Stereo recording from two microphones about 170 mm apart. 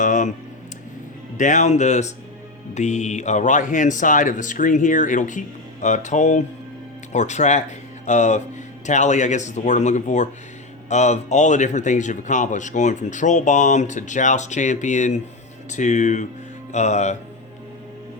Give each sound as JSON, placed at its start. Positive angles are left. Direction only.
{"t": 0.0, "sound": "speech", "side_deg": 50}
{"t": 1.4, "sound": "a man's voice", "side_deg": 45}